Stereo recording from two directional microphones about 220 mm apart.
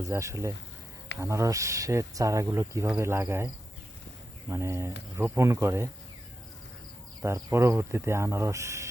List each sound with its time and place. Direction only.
0.1 s speech: 15° right (ahead or behind)
7.2 s speech: 15° right (ahead or behind)